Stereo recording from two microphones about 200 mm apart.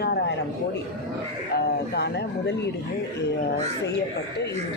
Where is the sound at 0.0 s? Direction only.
55° left (ahead or behind).